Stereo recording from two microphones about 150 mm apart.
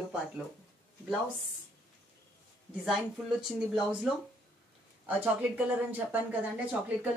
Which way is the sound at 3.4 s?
5° right (ahead or behind).